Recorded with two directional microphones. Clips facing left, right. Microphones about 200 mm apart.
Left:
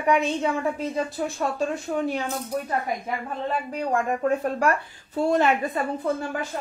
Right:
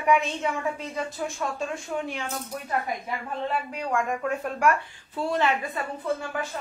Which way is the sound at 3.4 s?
40° left (ahead or behind).